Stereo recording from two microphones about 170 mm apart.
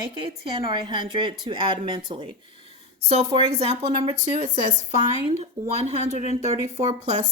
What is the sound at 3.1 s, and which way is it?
Speech, 40° right (ahead or behind).